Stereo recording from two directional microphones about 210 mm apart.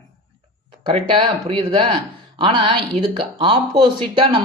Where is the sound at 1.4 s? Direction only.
25° right (ahead or behind).